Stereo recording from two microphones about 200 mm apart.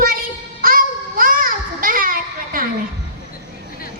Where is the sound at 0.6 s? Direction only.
45° right (ahead or behind).